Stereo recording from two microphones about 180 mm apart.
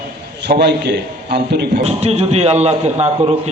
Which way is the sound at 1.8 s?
35° right (ahead or behind).